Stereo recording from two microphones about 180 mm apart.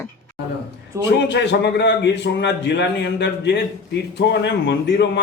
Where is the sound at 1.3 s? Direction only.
80° left.